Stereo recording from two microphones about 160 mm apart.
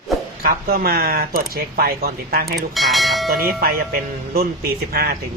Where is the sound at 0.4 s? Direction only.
70° right (ahead or behind).